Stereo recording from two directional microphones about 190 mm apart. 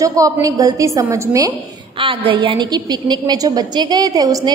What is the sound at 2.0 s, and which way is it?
A woman's voice, 25° right (ahead or behind).